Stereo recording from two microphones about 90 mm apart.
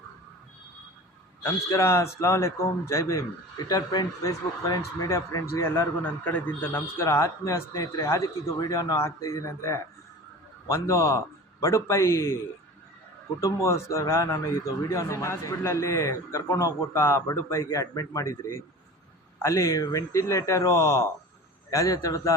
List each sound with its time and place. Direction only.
1.4 s speech: 30° left (ahead or behind)
3.7 s a man's voice: 45° left (ahead or behind)
5.0 s speech: 30° left (ahead or behind)
6.0 s a man's voice: 20° left (ahead or behind); by 9.0 s 45° left (ahead or behind)
9.0 s speech: 35° left (ahead or behind)
13.4 s speech: 30° left (ahead or behind)